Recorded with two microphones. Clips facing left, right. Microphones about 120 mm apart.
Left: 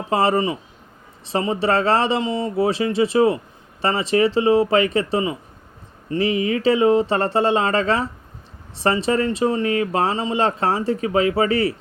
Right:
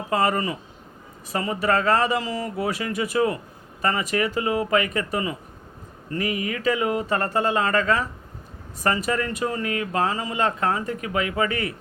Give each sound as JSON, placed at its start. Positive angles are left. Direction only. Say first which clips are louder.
{"t": 0.1, "sound": "speech", "louder": "left 4 dB", "side_deg": 30}